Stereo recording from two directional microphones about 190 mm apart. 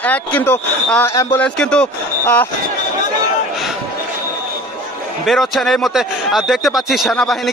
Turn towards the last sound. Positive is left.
turn(degrees=0)  # may be behind; listen again after turning